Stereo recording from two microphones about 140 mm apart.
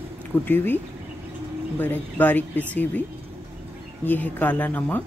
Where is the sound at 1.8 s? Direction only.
15° left (ahead or behind).